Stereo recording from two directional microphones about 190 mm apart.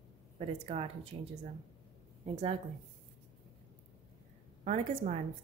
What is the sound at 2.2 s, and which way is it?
Speech, 30° right (ahead or behind).